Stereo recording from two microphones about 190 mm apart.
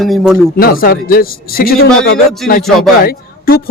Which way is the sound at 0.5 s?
50° left (ahead or behind).